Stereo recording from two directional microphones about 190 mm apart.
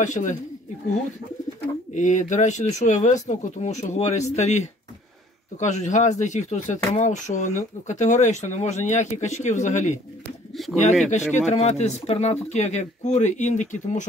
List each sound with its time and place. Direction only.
0.0 s speech: 40° left (ahead or behind)
2.0 s speech: 40° left (ahead or behind)
10.6 s speech: centre (ahead or behind)
11.1 s speech: 35° left (ahead or behind)